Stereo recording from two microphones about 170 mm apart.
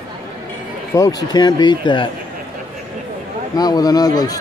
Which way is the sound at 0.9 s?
20° left (ahead or behind).